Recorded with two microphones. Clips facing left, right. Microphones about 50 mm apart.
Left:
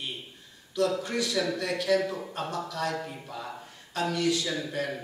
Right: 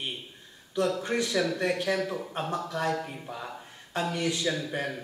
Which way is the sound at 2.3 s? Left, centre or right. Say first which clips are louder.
Right 2 dB; right.